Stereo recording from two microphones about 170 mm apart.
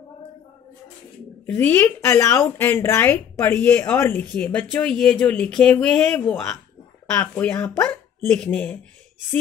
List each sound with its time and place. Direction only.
1.4 s a woman's voice: 10° left (ahead or behind)